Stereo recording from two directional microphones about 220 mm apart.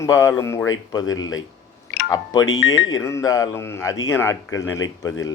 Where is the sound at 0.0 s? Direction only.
15° left (ahead or behind).